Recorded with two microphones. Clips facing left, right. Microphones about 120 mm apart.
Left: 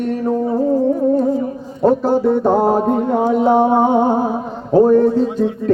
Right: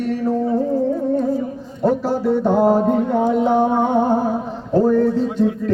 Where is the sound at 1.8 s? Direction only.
50° left (ahead or behind).